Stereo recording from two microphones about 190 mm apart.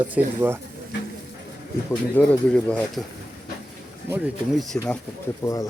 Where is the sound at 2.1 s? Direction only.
10° left (ahead or behind).